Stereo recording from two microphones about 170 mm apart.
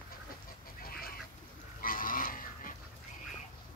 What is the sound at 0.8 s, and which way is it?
Goose, 60° left (ahead or behind).